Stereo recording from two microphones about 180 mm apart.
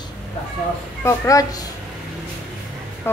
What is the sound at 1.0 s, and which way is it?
Speech, 20° left (ahead or behind).